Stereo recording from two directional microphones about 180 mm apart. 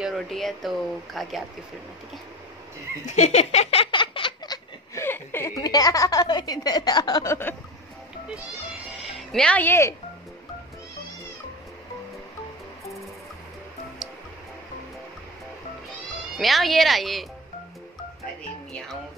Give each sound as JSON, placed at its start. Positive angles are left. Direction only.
{"t": 0.0, "sound": "speech", "side_deg": 0}
{"t": 3.1, "sound": "a sound", "side_deg": 40}
{"t": 4.9, "sound": "a woman's voice", "side_deg": 10}
{"t": 8.9, "sound": "speech", "side_deg": 0}
{"t": 16.3, "sound": "speech", "side_deg": 0}